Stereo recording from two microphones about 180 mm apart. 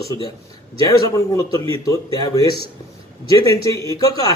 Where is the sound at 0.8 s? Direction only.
20° left (ahead or behind).